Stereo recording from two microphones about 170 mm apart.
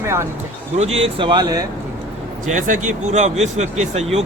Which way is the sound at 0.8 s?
35° right (ahead or behind).